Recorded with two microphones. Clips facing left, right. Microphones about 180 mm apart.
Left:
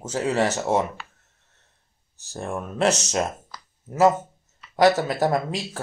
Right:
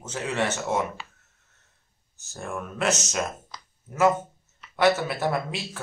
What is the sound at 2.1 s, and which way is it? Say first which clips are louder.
Speech: left 4 dB; 35° left (ahead or behind).